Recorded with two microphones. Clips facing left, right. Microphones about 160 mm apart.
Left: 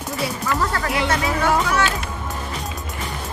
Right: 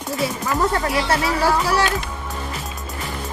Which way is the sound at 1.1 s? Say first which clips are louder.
Right 1 dB; 35° right (ahead or behind).